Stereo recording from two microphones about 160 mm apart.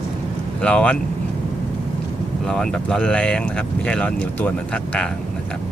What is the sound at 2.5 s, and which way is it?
Speech, 5° left (ahead or behind).